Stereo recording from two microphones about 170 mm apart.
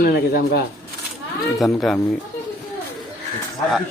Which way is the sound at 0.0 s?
70° left (ahead or behind).